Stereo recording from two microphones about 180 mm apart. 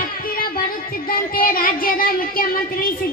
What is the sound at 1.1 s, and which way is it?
Speech, 55° left (ahead or behind).